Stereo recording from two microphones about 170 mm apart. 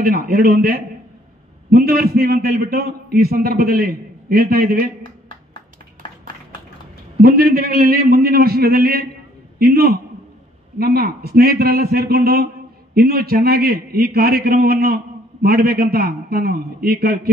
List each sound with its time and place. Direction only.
0.0 s a man's voice: 60° right (ahead or behind)
7.2 s a man's voice: 65° right (ahead or behind)